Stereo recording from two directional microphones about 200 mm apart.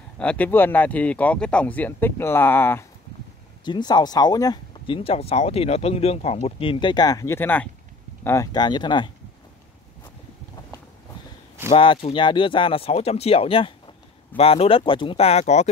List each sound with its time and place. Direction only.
0.2 s speech: 5° left (ahead or behind)
3.6 s speech: 20° left (ahead or behind)
11.7 s speech: 25° left (ahead or behind)